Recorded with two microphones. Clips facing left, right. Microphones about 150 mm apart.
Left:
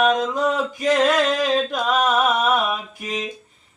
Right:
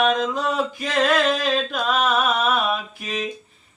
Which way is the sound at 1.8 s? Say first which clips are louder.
Left 1 dB; 15° left (ahead or behind).